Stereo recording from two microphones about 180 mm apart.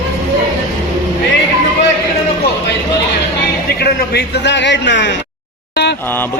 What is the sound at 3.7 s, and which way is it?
A man's voice, 65° left (ahead or behind).